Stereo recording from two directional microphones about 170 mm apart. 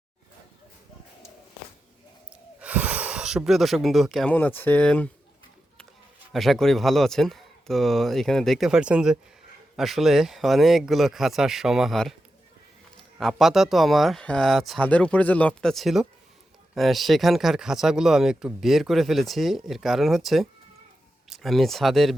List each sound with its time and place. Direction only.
2.3 s speech: 5° right (ahead or behind); by 5.0 s 10° left (ahead or behind)
6.3 s speech: centre (ahead or behind)
13.1 s speech: centre (ahead or behind)